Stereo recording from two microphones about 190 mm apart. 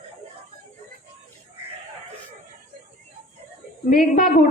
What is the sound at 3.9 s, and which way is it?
Speech, 45° left (ahead or behind).